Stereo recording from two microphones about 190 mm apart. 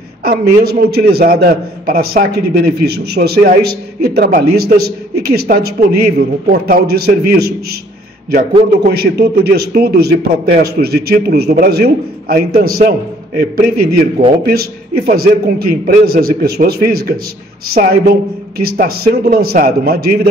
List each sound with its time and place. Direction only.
0.2 s a man's voice: 50° right (ahead or behind)
8.9 s a man's voice: 55° right (ahead or behind)